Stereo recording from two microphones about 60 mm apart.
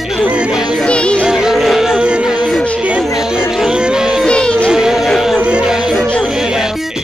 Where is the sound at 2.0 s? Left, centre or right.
Centre.